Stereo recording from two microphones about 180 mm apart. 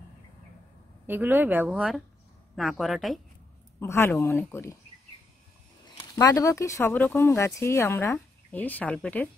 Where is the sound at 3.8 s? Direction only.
15° left (ahead or behind).